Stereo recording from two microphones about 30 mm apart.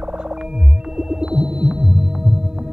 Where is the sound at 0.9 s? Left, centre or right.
Centre.